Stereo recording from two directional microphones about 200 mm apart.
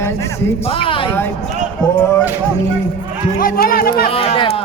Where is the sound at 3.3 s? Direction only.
45° left (ahead or behind).